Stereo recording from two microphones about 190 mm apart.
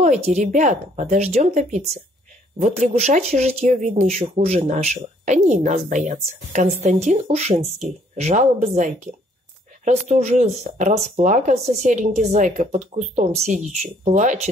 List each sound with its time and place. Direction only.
0.0 s speech: 40° right (ahead or behind)